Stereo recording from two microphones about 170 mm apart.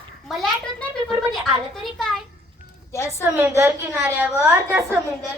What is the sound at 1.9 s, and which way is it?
Speech, centre (ahead or behind).